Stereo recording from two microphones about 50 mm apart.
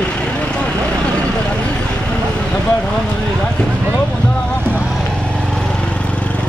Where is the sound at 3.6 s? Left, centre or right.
Centre.